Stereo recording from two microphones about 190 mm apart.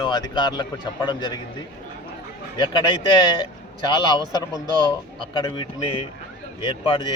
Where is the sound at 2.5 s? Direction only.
25° left (ahead or behind).